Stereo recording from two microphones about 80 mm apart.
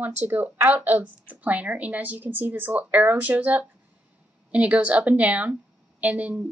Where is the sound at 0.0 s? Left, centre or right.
Right.